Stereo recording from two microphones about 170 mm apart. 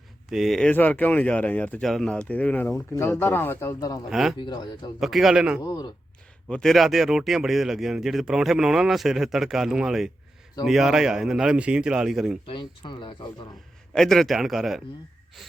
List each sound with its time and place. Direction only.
0.3 s speech: centre (ahead or behind); by 3.9 s 20° left (ahead or behind)
4.1 s speech: centre (ahead or behind)
4.4 s speech: 25° left (ahead or behind)
4.9 s speech: centre (ahead or behind)
5.6 s speech: 20° left (ahead or behind)
6.5 s speech: centre (ahead or behind)
12.5 s speech: 30° left (ahead or behind)
13.9 s speech: centre (ahead or behind)